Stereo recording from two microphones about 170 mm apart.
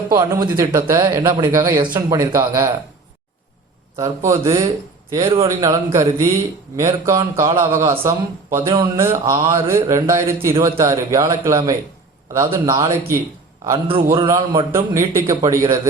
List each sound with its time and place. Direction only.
0.2 s a man's voice: 20° right (ahead or behind)
3.9 s speech: 20° right (ahead or behind)
5.1 s speech: 30° right (ahead or behind)
5.6 s a man's voice: 20° right (ahead or behind)
8.6 s speech: 30° right (ahead or behind)
9.0 s a man's voice: 15° right (ahead or behind)
13.8 s a man's voice: 30° right (ahead or behind)
14.3 s a man's voice: 20° right (ahead or behind)